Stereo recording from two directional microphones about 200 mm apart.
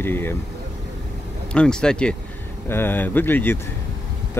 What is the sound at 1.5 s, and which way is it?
Speech, 5° left (ahead or behind).